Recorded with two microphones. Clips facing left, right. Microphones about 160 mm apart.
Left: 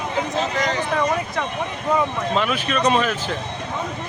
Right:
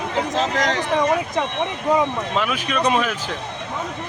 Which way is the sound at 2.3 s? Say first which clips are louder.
Left 3 dB; 10° right (ahead or behind).